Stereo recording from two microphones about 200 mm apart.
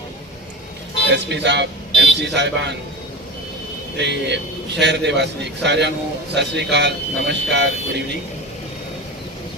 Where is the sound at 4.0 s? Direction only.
60° right (ahead or behind).